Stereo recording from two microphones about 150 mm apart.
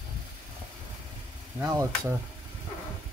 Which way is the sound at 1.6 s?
20° right (ahead or behind).